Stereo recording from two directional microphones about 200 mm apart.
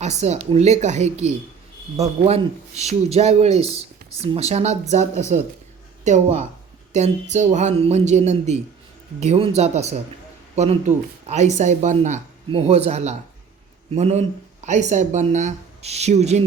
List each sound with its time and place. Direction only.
0.0 s speech: 35° right (ahead or behind)